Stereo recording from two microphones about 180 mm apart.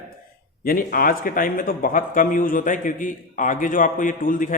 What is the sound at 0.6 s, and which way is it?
Speech, 55° left (ahead or behind).